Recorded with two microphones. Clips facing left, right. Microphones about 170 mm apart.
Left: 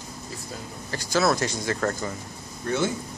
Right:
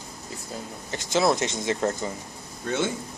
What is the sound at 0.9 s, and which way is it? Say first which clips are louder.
A man's voice: even; 25° right (ahead or behind).